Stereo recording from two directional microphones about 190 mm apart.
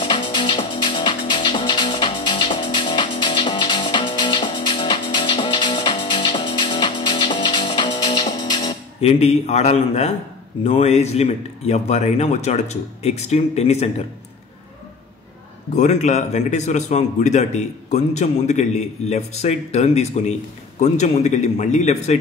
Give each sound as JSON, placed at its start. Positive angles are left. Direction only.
{"t": 0.0, "sound": "music", "side_deg": 25}
{"t": 9.2, "sound": "a man's voice", "side_deg": 35}
{"t": 15.7, "sound": "a man's voice", "side_deg": 40}